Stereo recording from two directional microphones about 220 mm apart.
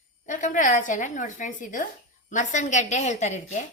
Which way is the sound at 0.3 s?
35° left (ahead or behind).